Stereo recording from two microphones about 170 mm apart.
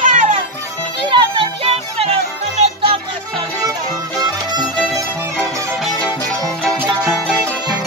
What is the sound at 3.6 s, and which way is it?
Music, 25° right (ahead or behind).